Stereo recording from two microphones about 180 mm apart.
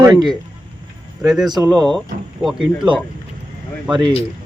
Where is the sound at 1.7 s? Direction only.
5° left (ahead or behind).